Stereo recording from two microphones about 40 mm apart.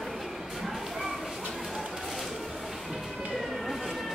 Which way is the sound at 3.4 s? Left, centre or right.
Centre.